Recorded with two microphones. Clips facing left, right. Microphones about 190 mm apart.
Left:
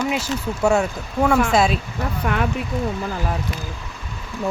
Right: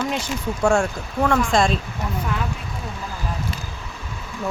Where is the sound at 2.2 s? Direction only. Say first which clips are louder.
Left 7 dB; 65° left (ahead or behind).